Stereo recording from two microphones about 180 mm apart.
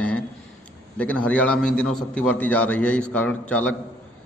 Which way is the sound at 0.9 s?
5° left (ahead or behind).